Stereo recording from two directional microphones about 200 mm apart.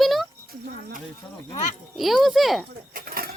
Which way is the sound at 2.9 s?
45° right (ahead or behind).